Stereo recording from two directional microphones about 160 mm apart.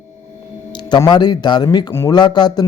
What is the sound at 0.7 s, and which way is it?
A man's voice, 25° left (ahead or behind).